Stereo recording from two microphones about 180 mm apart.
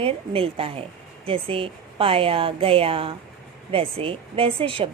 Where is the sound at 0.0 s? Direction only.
30° right (ahead or behind).